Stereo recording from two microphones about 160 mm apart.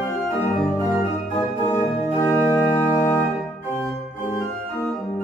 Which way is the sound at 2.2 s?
15° left (ahead or behind).